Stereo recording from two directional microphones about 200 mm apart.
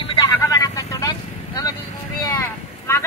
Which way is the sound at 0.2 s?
20° left (ahead or behind).